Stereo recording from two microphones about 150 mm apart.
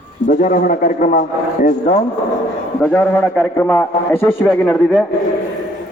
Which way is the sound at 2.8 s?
10° left (ahead or behind).